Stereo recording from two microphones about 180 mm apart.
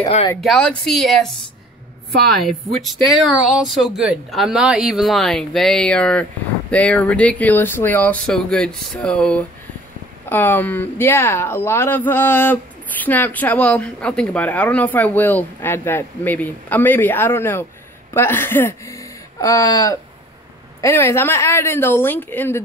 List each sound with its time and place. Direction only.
0.4 s speech: 5° left (ahead or behind)
3.1 s speech: centre (ahead or behind)